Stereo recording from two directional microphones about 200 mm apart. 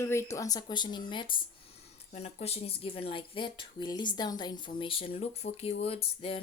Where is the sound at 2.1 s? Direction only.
30° left (ahead or behind).